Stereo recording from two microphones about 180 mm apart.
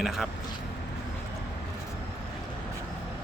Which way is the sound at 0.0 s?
Centre (ahead or behind).